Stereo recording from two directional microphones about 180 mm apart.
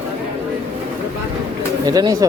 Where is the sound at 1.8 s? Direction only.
20° right (ahead or behind).